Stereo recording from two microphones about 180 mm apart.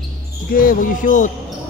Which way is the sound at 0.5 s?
50° left (ahead or behind).